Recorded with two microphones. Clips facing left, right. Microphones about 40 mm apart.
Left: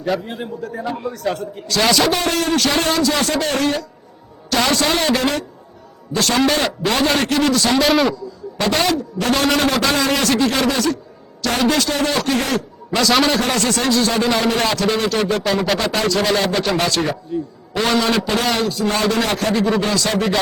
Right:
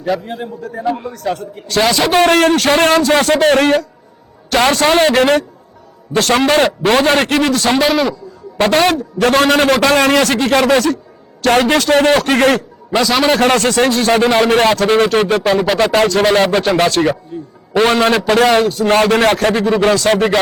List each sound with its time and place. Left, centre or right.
0.0 s a man's voice: centre
0.8 s a man's voice: centre
1.1 s a man's voice: centre
2.0 s a man's voice: right
7.9 s a man's voice: centre
8.5 s a man's voice: right
13.0 s a man's voice: centre
13.2 s a man's voice: right